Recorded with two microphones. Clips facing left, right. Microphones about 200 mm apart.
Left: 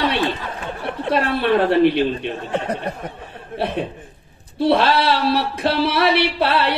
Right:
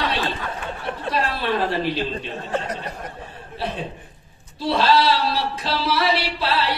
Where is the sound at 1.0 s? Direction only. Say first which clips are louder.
Left 6 dB; 60° left (ahead or behind).